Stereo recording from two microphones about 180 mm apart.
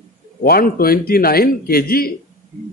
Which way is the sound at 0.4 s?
55° left (ahead or behind).